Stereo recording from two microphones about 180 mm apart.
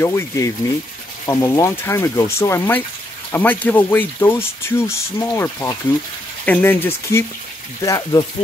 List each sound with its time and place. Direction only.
0.0 s speech: 15° left (ahead or behind)